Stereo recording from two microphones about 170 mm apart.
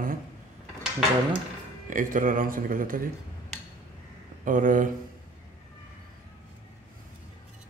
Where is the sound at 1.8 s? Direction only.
50° right (ahead or behind).